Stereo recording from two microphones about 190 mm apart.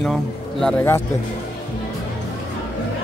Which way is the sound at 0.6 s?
15° left (ahead or behind).